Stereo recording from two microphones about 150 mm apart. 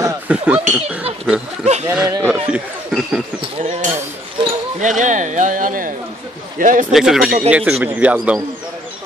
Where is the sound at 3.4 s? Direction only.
40° right (ahead or behind).